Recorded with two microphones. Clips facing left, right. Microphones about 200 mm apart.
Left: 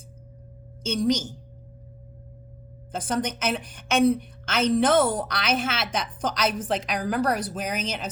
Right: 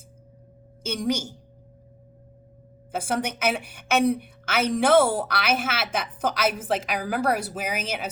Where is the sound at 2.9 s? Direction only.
10° right (ahead or behind).